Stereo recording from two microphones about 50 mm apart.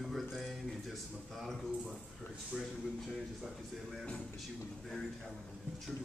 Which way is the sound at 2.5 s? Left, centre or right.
Centre.